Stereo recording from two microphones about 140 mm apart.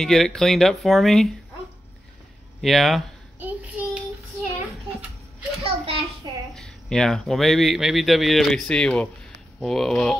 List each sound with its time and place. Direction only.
0.0 s speech: 5° left (ahead or behind)
2.6 s speech: centre (ahead or behind)
3.3 s child singing: 10° right (ahead or behind)
5.6 s a child's voice: 45° right (ahead or behind)
6.5 s speech: 5° left (ahead or behind)